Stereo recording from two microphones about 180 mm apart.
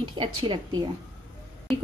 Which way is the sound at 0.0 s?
25° right (ahead or behind).